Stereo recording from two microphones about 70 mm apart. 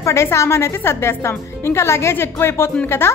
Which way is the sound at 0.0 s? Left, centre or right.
Left.